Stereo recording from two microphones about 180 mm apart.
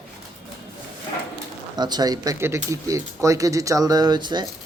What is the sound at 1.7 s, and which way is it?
Speech, 25° right (ahead or behind).